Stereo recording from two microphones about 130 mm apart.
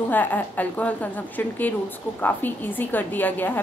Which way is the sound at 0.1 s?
15° left (ahead or behind).